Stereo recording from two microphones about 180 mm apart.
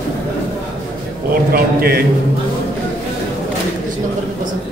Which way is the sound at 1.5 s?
55° right (ahead or behind).